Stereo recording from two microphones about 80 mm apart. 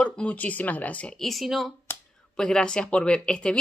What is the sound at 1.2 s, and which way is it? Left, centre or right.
Speech, centre.